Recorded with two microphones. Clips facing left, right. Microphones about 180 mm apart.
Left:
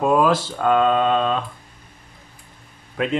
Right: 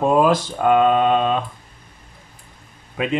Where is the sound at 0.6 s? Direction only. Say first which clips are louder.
Right 2 dB; 15° right (ahead or behind).